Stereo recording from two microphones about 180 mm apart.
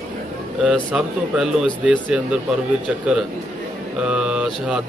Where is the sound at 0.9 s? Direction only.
5° right (ahead or behind).